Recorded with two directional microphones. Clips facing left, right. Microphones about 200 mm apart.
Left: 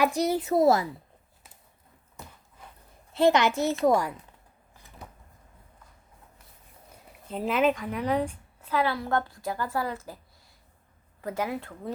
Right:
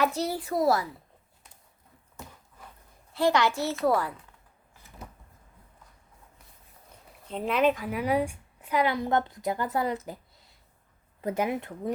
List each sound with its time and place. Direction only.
0.0 s a woman's voice: 15° left (ahead or behind)
3.1 s a woman's voice: 20° left (ahead or behind)
7.3 s a woman's voice: 5° left (ahead or behind); by 11.9 s 20° right (ahead or behind)